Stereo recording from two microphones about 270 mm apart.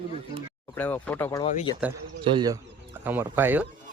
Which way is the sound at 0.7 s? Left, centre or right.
Centre.